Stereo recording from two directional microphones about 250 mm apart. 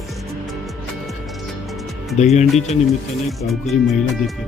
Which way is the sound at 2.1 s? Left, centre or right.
Left.